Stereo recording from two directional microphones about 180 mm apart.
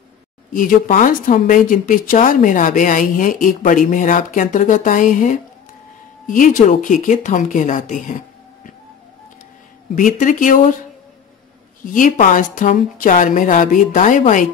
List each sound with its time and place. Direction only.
0.5 s speech: 50° left (ahead or behind)
9.9 s speech: 45° left (ahead or behind)
11.8 s speech: 50° left (ahead or behind)